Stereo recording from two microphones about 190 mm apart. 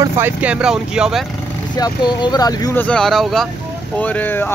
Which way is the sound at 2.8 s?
5° left (ahead or behind).